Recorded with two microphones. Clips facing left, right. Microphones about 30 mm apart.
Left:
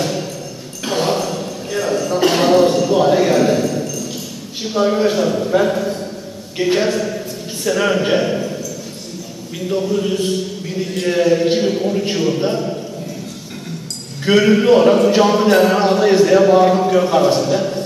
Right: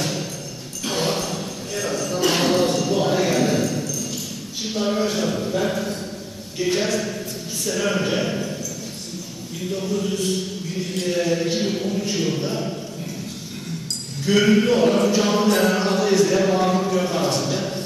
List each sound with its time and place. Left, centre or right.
0.0 s a sound: centre
4.7 s a man's voice: centre
5.6 s a sound: centre
6.6 s speech: left
7.0 s a sound: centre
7.6 s a man's voice: left
8.3 s a sound: centre
9.7 s speech: left
10.8 s a man's voice: centre
11.1 s a man's voice: left
11.9 s a man's voice: left
14.4 s a man's voice: centre
17.4 s a man's voice: centre